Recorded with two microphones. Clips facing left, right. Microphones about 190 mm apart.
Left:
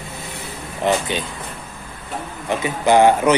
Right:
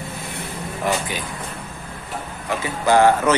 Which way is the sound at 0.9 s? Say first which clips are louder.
Left 4 dB; 25° left (ahead or behind).